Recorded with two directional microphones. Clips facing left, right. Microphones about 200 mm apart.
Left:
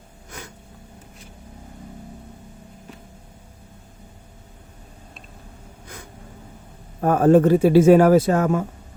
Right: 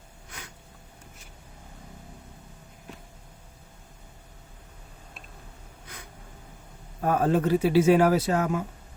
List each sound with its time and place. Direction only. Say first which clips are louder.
0.3 s snort: left 7 dB; 45° left (ahead or behind)
7.0 s speech: left 9 dB; 50° left (ahead or behind)